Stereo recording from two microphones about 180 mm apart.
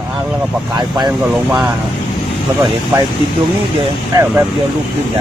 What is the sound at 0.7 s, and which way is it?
Speech, 25° right (ahead or behind).